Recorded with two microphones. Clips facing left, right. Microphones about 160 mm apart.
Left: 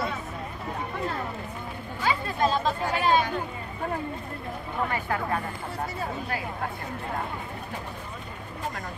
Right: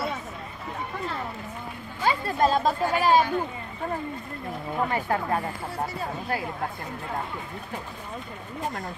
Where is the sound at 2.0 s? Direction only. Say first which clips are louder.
Right 3 dB; 40° right (ahead or behind).